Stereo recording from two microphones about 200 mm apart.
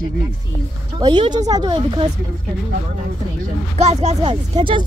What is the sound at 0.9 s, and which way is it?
Speech, 20° right (ahead or behind).